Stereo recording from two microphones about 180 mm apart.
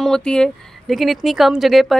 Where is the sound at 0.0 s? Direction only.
5° left (ahead or behind).